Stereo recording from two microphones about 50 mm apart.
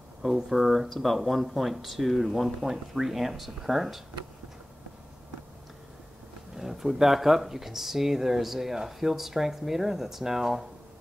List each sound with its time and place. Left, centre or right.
0.2 s speech: centre
6.5 s speech: centre